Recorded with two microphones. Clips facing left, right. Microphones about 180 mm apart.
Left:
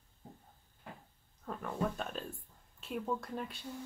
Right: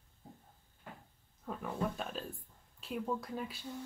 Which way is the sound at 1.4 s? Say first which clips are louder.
Left 1 dB; 5° right (ahead or behind).